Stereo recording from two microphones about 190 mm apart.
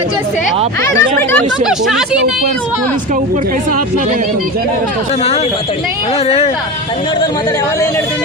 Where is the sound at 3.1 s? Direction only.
45° right (ahead or behind).